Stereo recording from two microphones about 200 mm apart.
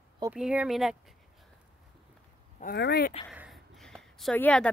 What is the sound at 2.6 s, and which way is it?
Speech, 55° left (ahead or behind).